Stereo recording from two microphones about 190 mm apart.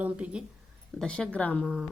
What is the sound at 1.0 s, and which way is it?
Speech, 5° left (ahead or behind).